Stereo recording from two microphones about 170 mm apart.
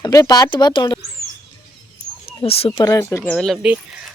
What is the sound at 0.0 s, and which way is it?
Speech, 20° left (ahead or behind).